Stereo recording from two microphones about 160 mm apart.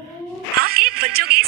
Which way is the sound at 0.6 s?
75° right (ahead or behind).